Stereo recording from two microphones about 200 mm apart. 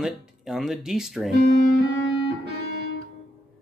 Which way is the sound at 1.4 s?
55° right (ahead or behind).